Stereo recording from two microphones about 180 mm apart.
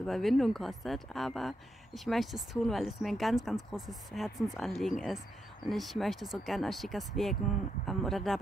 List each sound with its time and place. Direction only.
0.0 s speech: centre (ahead or behind)